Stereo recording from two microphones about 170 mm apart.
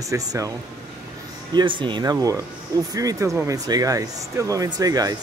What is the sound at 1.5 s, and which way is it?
Speech, 25° right (ahead or behind).